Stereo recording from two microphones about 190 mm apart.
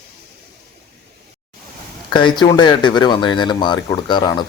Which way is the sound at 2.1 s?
25° left (ahead or behind).